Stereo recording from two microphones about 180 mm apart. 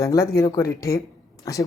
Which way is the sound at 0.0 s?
15° left (ahead or behind).